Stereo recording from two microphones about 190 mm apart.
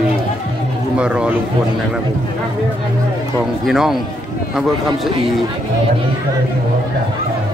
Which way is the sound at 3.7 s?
Centre (ahead or behind).